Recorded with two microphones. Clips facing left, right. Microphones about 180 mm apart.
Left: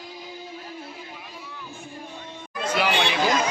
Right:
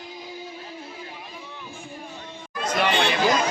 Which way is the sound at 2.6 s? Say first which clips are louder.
Right 1 dB; 5° left (ahead or behind).